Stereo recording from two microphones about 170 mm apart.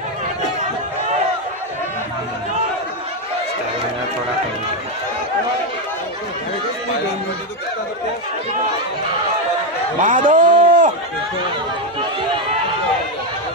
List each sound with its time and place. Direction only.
9.9 s speech: 50° right (ahead or behind)